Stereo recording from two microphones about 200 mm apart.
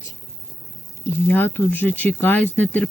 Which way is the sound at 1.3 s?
10° left (ahead or behind).